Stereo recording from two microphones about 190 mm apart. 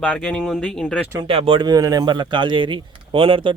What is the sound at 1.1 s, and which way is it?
Speech, 30° right (ahead or behind).